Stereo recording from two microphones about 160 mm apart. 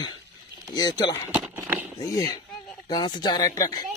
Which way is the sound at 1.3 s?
15° right (ahead or behind).